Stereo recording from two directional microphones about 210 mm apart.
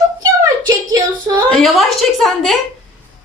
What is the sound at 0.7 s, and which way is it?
Speech, 15° right (ahead or behind).